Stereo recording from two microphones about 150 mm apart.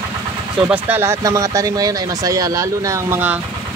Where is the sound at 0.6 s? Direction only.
15° right (ahead or behind).